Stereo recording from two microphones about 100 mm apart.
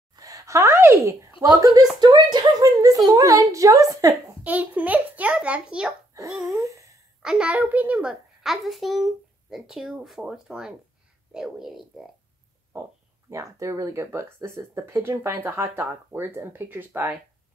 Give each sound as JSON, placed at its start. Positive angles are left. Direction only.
{"t": 0.1, "sound": "a sound", "side_deg": -35}
{"t": 1.5, "sound": "a woman's voice", "side_deg": -40}
{"t": 4.4, "sound": "a child's voice", "side_deg": -15}
{"t": 12.7, "sound": "speech", "side_deg": -25}